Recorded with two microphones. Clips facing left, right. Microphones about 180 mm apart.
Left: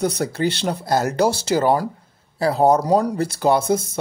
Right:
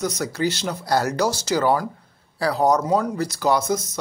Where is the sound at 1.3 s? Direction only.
60° left (ahead or behind).